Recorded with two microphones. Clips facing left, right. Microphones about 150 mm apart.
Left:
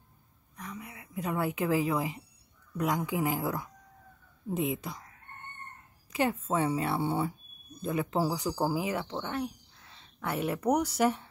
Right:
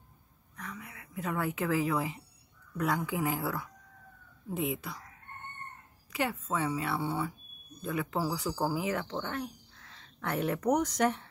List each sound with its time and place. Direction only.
0.6 s a woman's voice: 20° left (ahead or behind)
6.1 s a woman's voice: 25° left (ahead or behind); by 11.2 s 5° left (ahead or behind)